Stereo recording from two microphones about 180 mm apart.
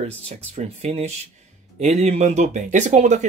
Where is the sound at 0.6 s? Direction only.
35° right (ahead or behind).